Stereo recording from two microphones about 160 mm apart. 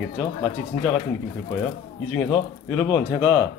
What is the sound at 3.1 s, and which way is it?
Speech, 10° right (ahead or behind).